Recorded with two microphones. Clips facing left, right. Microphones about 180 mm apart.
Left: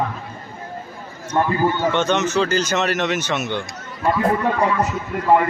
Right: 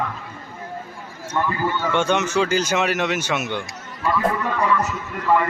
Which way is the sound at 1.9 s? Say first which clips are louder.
Left 1 dB; 10° right (ahead or behind).